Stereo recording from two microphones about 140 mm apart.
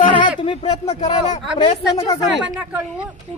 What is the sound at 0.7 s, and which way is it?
Speech, 55° left (ahead or behind).